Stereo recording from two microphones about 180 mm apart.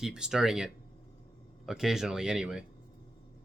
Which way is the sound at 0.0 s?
5° right (ahead or behind).